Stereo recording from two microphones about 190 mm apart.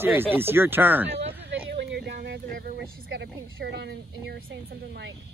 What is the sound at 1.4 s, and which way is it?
Speech, 60° right (ahead or behind).